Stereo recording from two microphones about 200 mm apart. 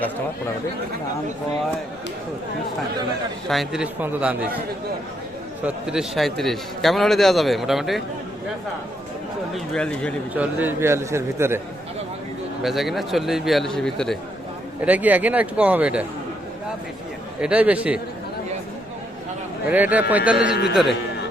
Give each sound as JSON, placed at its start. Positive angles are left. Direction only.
{"t": 3.5, "sound": "a man's voice", "side_deg": 0}
{"t": 5.6, "sound": "a man's voice", "side_deg": -5}
{"t": 9.7, "sound": "a man's voice", "side_deg": 5}
{"t": 10.3, "sound": "a man's voice", "side_deg": -10}
{"t": 12.6, "sound": "a man's voice", "side_deg": 0}
{"t": 14.8, "sound": "a man's voice", "side_deg": -10}
{"t": 17.4, "sound": "a man's voice", "side_deg": -5}
{"t": 19.6, "sound": "a man's voice", "side_deg": -10}
{"t": 20.5, "sound": "a man's voice", "side_deg": 55}